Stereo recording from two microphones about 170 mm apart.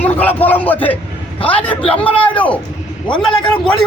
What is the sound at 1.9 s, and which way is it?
Speech, 30° left (ahead or behind).